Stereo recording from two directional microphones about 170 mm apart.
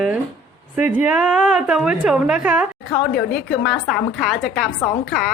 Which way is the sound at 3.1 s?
65° left (ahead or behind).